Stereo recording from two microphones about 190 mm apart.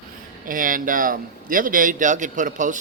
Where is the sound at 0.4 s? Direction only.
45° right (ahead or behind).